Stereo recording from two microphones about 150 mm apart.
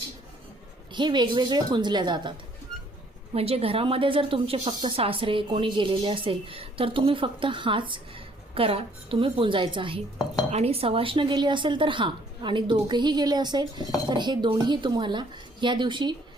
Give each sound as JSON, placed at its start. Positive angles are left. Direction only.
{"t": 0.9, "sound": "a woman's voice", "side_deg": -30}
{"t": 3.3, "sound": "a woman's voice", "side_deg": -40}